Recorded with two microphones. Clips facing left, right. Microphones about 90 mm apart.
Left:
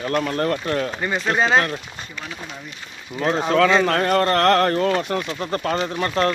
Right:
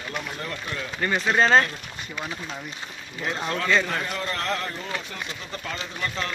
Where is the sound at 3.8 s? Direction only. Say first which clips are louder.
Left 11 dB; 65° left (ahead or behind).